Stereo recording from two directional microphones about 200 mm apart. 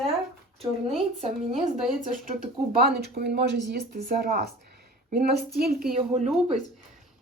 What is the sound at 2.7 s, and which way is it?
A woman's voice, 50° right (ahead or behind).